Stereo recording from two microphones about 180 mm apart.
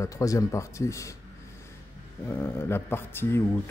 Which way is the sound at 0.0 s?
20° left (ahead or behind).